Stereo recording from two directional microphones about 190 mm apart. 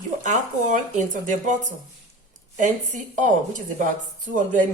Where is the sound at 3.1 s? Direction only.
45° right (ahead or behind).